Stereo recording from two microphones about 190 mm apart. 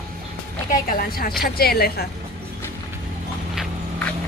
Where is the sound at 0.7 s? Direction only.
50° left (ahead or behind).